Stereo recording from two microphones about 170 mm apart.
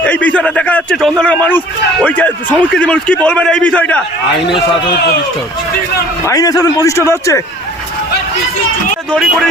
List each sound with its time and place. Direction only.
0.0 s a man's voice: 10° left (ahead or behind)
6.2 s a man's voice: 20° left (ahead or behind)
9.0 s speech: centre (ahead or behind)